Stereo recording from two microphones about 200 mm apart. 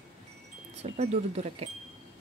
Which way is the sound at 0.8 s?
30° right (ahead or behind).